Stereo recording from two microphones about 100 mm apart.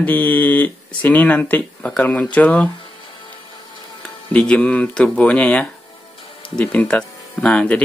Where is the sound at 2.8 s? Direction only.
55° left (ahead or behind).